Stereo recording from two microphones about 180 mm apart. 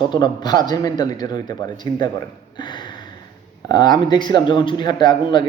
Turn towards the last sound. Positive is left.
turn(degrees=25)  # may be behind; listen again after turning